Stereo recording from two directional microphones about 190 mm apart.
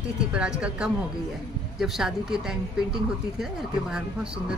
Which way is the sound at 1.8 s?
Centre (ahead or behind).